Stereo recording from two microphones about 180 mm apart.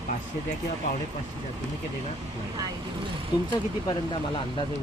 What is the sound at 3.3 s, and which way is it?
Speech, 20° left (ahead or behind).